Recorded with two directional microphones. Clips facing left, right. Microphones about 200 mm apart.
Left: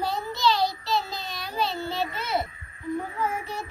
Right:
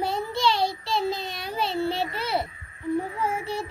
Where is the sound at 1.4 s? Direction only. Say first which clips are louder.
Right 2 dB; 30° right (ahead or behind).